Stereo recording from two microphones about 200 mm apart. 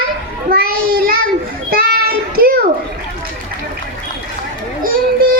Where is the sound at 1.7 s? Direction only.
50° right (ahead or behind).